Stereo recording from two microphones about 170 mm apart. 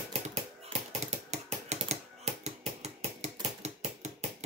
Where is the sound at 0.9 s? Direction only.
40° right (ahead or behind).